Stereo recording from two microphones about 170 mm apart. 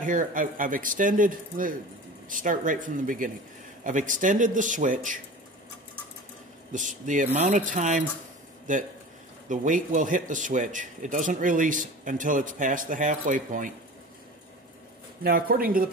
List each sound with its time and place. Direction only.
0.0 s speech: 50° right (ahead or behind)
6.7 s speech: 50° right (ahead or behind)
15.2 s speech: 60° right (ahead or behind)